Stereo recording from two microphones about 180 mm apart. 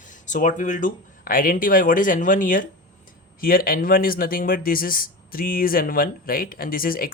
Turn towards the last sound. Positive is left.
turn(degrees=55)  # may be behind; listen again after turning